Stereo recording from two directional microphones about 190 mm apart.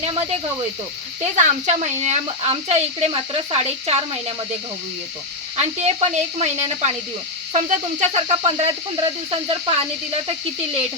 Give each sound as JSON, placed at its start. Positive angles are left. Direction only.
{"t": 0.0, "sound": "speech", "side_deg": -30}
{"t": 1.4, "sound": "speech", "side_deg": -35}
{"t": 5.5, "sound": "speech", "side_deg": -35}